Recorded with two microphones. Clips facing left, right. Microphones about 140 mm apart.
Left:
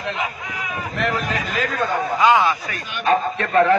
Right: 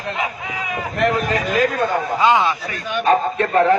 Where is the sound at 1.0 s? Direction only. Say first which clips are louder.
Right 5 dB; 45° right (ahead or behind).